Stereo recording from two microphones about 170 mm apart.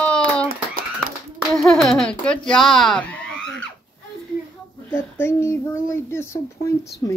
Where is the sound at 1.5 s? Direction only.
5° left (ahead or behind).